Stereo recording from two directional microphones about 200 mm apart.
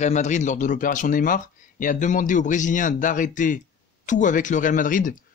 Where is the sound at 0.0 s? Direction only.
35° left (ahead or behind).